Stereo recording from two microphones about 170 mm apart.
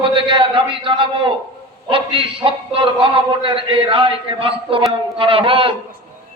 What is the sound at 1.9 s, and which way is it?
Music, 30° right (ahead or behind).